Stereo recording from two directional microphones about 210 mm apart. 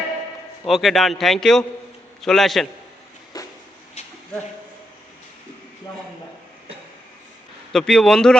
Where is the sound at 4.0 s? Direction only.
30° left (ahead or behind).